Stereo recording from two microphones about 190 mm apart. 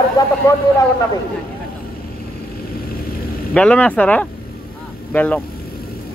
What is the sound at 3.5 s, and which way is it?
Speech, 5° left (ahead or behind).